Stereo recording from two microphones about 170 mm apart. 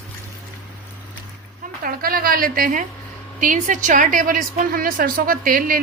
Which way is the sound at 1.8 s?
60° right (ahead or behind).